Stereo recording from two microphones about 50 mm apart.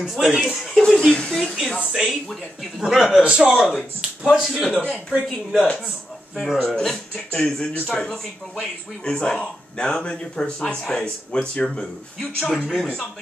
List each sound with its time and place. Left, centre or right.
0.0 s speech: centre
9.0 s speech: centre
10.6 s speech: centre